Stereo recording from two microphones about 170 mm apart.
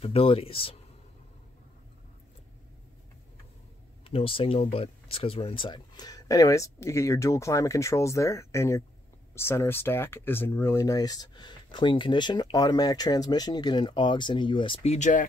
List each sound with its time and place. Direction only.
0.0 s speech: 35° left (ahead or behind)
4.0 s speech: 30° left (ahead or behind)